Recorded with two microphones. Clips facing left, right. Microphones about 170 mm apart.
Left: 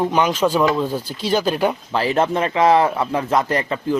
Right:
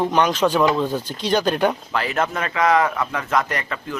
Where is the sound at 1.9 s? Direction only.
30° left (ahead or behind).